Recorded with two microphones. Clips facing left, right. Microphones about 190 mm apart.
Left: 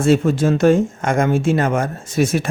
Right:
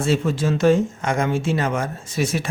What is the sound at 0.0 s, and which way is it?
Speech, 50° left (ahead or behind).